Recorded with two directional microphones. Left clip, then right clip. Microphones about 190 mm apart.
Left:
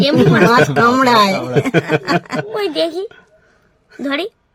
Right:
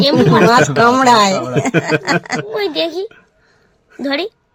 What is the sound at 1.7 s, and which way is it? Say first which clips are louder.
Speech: right 2 dB; 25° left (ahead or behind).